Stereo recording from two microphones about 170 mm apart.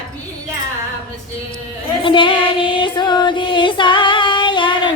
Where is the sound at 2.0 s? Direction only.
30° left (ahead or behind).